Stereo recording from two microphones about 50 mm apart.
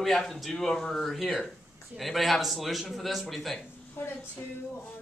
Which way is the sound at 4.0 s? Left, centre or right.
Left.